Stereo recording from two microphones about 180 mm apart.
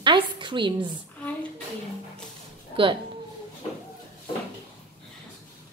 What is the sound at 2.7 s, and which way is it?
Speech, 30° right (ahead or behind).